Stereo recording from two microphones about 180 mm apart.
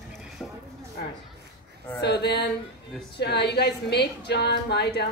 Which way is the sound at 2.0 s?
65° left (ahead or behind).